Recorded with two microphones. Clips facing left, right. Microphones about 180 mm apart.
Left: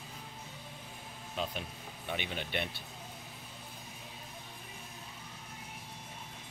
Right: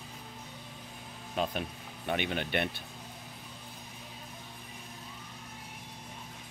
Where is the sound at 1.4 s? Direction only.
55° right (ahead or behind).